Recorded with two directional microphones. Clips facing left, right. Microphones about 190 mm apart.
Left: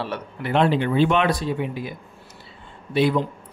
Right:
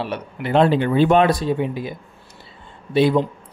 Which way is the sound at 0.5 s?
40° right (ahead or behind).